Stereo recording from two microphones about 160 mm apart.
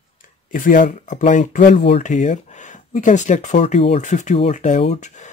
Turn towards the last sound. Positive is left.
turn(degrees=50)  # may be behind; listen again after turning